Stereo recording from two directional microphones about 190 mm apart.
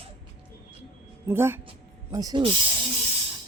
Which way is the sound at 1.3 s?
10° right (ahead or behind).